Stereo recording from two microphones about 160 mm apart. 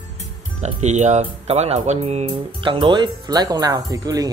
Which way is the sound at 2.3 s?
30° right (ahead or behind).